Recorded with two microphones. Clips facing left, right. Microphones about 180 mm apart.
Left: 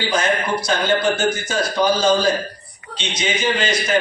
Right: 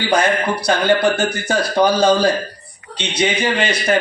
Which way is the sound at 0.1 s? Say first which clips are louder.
Right 4 dB; 65° right (ahead or behind).